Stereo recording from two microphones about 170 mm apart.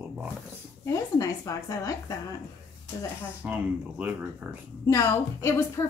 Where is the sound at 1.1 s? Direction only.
20° left (ahead or behind).